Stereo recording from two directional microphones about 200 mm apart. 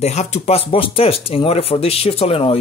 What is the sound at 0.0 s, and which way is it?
Speech, 35° left (ahead or behind).